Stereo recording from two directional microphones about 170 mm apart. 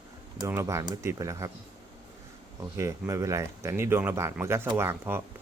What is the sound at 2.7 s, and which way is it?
Speech, 15° right (ahead or behind).